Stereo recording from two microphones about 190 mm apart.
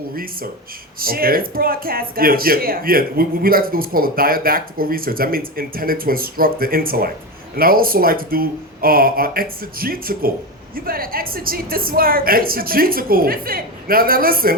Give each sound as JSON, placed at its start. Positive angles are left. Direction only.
{"t": 0.9, "sound": "speech", "side_deg": -50}